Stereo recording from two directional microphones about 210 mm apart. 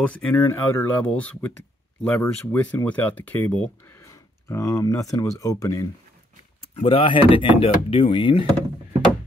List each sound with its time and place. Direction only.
0.0 s speech: 5° left (ahead or behind)
6.6 s speech: 25° left (ahead or behind)